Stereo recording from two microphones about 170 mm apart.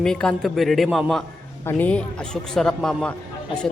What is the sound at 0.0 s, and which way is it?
A man's voice, 5° left (ahead or behind).